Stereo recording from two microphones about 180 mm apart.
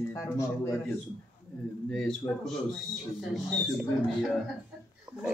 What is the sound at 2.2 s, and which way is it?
Speech, 20° left (ahead or behind).